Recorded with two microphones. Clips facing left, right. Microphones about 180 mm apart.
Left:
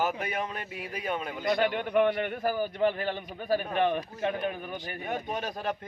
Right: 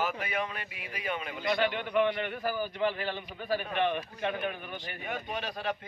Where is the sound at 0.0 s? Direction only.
45° left (ahead or behind).